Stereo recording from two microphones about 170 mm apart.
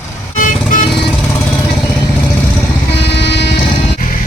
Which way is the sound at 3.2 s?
85° left.